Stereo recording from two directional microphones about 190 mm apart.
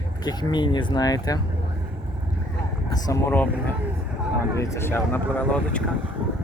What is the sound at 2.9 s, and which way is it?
Speech, 15° left (ahead or behind).